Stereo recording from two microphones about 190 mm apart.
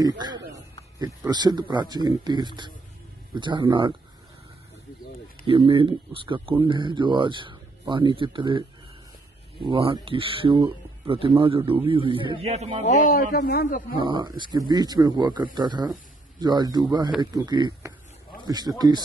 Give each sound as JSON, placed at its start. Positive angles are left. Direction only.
{"t": 0.0, "sound": "a man's voice", "side_deg": -20}
{"t": 5.5, "sound": "speech", "side_deg": -30}
{"t": 12.8, "sound": "a man's voice", "side_deg": 40}
{"t": 13.9, "sound": "speech", "side_deg": -25}